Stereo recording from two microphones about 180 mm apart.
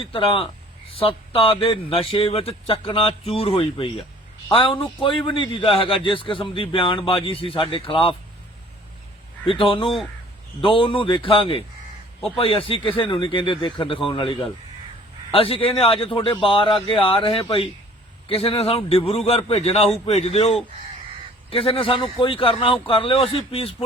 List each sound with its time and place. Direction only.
0.0 s a man's voice: 30° left (ahead or behind)
9.5 s a man's voice: 30° left (ahead or behind)